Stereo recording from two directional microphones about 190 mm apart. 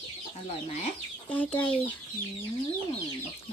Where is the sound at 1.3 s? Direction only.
10° left (ahead or behind).